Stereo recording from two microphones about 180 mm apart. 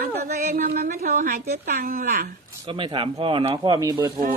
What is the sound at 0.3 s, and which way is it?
A woman's voice, 55° right (ahead or behind).